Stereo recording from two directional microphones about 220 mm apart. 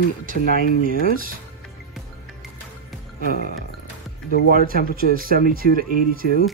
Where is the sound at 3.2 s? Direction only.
40° left (ahead or behind).